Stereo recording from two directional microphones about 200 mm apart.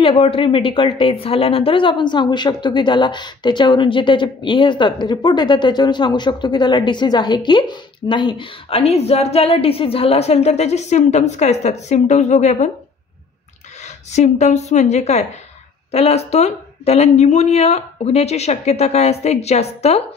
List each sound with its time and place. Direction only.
0.0 s a woman's voice: 30° left (ahead or behind)
14.1 s speech: 35° left (ahead or behind)